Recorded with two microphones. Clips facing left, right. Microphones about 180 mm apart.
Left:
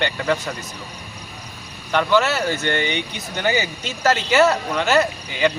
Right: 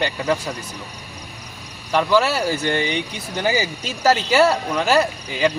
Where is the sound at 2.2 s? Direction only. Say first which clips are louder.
Right 1 dB; 35° right (ahead or behind).